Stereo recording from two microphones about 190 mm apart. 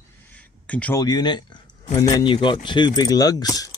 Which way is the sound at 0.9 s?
20° left (ahead or behind).